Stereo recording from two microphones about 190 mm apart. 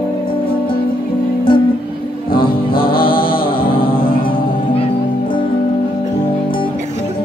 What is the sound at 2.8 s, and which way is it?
Music, 25° left (ahead or behind).